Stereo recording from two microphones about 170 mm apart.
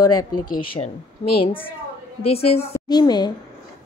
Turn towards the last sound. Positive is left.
turn(degrees=25)  # may be behind; listen again after turning